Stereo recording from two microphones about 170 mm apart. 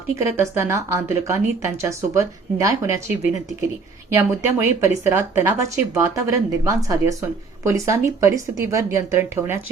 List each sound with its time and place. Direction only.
0.2 s speech: 15° right (ahead or behind)
4.1 s speech: 15° right (ahead or behind)